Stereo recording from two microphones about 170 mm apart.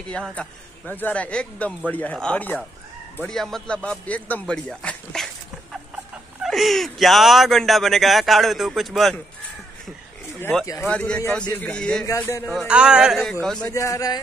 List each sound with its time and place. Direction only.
0.1 s a man's voice: 5° left (ahead or behind)
10.4 s a man's voice: 15° left (ahead or behind)
12.1 s a man's voice: 15° left (ahead or behind)
12.4 s speech: 5° right (ahead or behind)
13.7 s speech: 20° left (ahead or behind)